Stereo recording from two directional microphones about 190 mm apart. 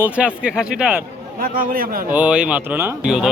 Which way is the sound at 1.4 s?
45° right (ahead or behind).